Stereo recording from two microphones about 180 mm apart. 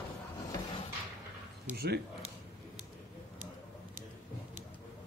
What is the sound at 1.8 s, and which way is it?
Speech, 65° right (ahead or behind).